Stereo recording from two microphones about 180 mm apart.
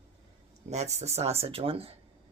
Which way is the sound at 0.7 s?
35° right (ahead or behind).